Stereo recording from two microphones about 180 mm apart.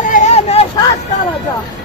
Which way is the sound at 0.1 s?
40° left (ahead or behind).